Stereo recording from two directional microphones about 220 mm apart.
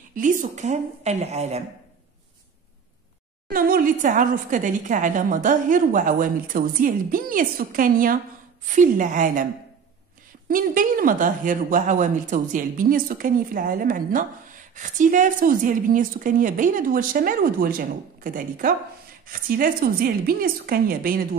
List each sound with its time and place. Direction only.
0.1 s a woman's voice: 35° right (ahead or behind)
3.4 s a woman's voice: 40° right (ahead or behind)
10.5 s a woman's voice: 40° right (ahead or behind)